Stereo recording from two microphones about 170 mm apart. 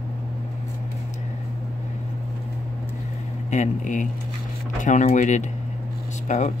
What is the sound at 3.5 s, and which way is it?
Speech, 45° left (ahead or behind).